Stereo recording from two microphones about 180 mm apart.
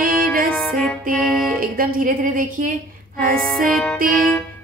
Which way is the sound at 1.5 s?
55° right (ahead or behind).